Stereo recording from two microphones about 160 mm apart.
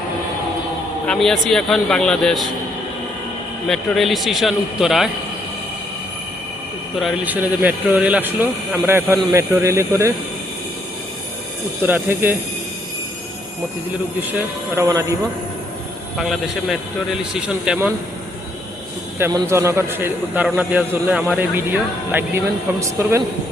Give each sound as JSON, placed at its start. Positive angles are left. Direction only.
{"t": 1.0, "sound": "speech", "side_deg": 5}
{"t": 3.7, "sound": "speech", "side_deg": 0}
{"t": 7.0, "sound": "speech", "side_deg": -10}
{"t": 11.8, "sound": "speech", "side_deg": -10}
{"t": 14.8, "sound": "speech", "side_deg": -20}
{"t": 16.1, "sound": "speech", "side_deg": 0}
{"t": 19.2, "sound": "speech", "side_deg": -15}